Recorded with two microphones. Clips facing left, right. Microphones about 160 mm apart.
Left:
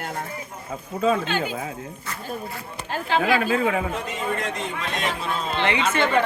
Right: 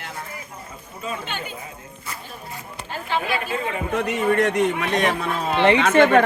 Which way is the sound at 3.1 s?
90° left.